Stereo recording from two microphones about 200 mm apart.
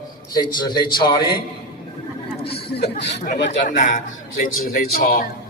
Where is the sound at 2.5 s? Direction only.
30° left (ahead or behind).